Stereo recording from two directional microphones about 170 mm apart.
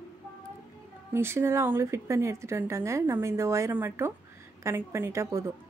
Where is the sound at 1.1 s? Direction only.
15° right (ahead or behind).